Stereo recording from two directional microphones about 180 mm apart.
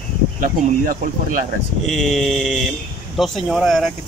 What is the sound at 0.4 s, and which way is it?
Speech, 50° right (ahead or behind).